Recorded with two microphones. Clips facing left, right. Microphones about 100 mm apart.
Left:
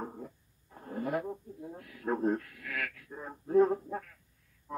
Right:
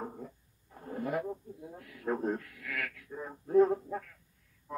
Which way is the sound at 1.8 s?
5° left (ahead or behind).